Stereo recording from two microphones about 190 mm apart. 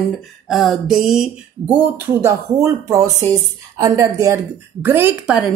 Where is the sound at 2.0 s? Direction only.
15° right (ahead or behind).